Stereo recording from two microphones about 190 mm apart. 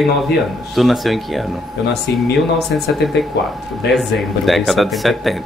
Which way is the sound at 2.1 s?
65° left (ahead or behind).